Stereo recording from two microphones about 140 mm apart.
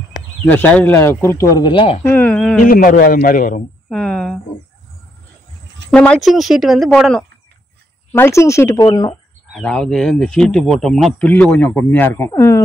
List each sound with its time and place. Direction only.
0.5 s speech: 10° left (ahead or behind); by 2.0 s 35° left (ahead or behind)
2.0 s a sound: 15° left (ahead or behind)
2.6 s a man's voice: 75° left (ahead or behind)
3.9 s a sound: 5° left (ahead or behind)
5.9 s speech: 5° left (ahead or behind)
8.1 s speech: 20° left (ahead or behind)
9.5 s speech: 5° left (ahead or behind); by 12.6 s 20° left (ahead or behind)